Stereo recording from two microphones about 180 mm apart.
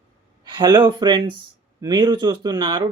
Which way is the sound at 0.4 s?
25° right (ahead or behind).